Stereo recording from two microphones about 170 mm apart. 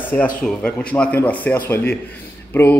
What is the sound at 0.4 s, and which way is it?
A man's voice, 5° left (ahead or behind).